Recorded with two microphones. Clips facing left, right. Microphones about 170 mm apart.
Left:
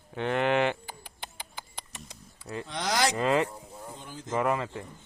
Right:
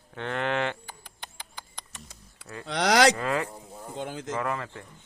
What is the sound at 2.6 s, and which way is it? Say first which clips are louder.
Speech: right 7 dB; 75° right (ahead or behind).